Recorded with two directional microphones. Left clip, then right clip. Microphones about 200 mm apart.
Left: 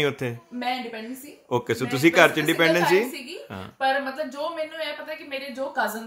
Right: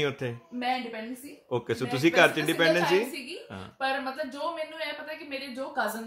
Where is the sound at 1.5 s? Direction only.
15° left (ahead or behind).